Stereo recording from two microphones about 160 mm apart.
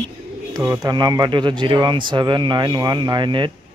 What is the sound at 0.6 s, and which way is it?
Speech, 20° right (ahead or behind).